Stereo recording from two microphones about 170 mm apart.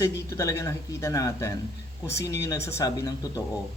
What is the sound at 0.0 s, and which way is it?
Speech, 20° left (ahead or behind).